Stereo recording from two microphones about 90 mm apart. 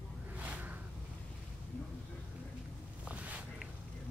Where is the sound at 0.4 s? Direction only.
15° right (ahead or behind).